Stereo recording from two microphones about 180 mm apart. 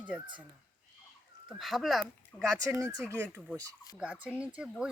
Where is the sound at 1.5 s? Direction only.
Centre (ahead or behind).